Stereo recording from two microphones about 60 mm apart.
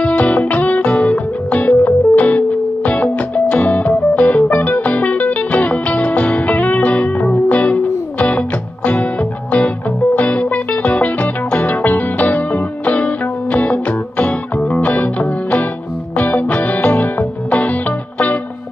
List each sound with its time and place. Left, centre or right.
0.0 s music: left